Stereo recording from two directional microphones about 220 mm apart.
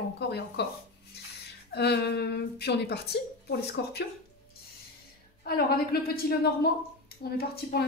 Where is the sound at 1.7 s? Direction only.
50° left (ahead or behind).